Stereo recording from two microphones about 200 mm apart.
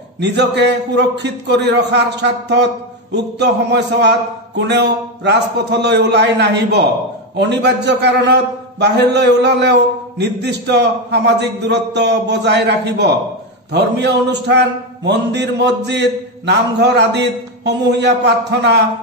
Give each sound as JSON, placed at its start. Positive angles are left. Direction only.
{"t": 0.2, "sound": "a man's voice", "side_deg": -60}